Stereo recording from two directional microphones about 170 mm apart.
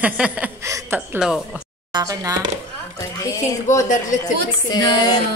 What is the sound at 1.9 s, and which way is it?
Speech, 25° right (ahead or behind).